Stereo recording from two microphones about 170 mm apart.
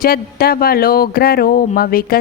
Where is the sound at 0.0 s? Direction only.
60° left (ahead or behind).